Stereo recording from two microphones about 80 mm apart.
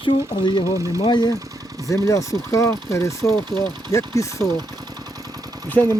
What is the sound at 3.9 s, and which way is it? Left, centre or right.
Speech, left.